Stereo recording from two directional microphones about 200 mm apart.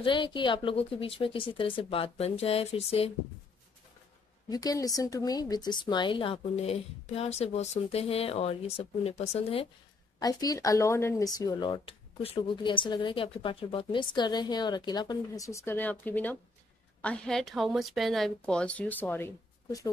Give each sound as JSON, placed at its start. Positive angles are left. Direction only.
{"t": 0.0, "sound": "speech", "side_deg": 25}
{"t": 4.5, "sound": "a woman's voice", "side_deg": 20}
{"t": 10.1, "sound": "a woman's voice", "side_deg": 20}